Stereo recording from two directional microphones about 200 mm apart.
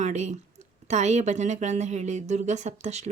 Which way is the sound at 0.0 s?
35° right (ahead or behind).